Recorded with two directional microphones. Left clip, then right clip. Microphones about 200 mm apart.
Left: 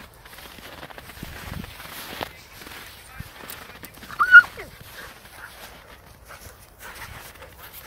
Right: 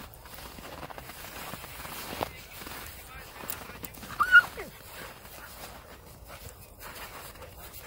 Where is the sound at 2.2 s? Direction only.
Centre (ahead or behind).